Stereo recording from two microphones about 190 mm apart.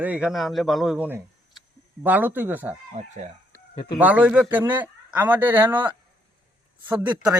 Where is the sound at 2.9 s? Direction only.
40° right (ahead or behind).